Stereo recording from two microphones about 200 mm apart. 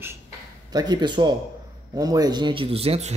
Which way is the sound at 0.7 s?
20° right (ahead or behind).